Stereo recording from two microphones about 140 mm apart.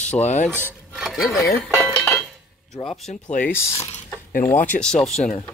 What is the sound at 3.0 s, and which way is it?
Speech, 60° left (ahead or behind).